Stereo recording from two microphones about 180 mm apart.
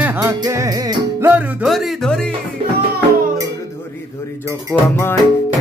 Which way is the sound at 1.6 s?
Centre (ahead or behind).